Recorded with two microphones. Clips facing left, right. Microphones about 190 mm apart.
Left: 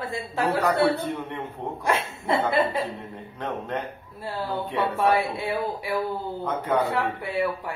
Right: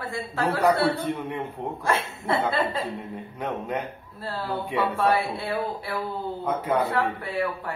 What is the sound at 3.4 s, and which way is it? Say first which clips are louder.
Speech: even; 10° right (ahead or behind).